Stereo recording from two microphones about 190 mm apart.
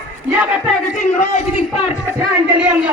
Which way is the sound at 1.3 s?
30° left (ahead or behind).